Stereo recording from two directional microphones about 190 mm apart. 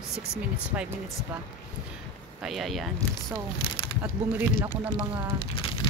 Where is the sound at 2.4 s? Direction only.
Centre (ahead or behind).